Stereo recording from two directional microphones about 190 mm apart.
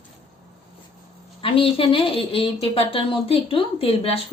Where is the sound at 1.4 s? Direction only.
30° left (ahead or behind).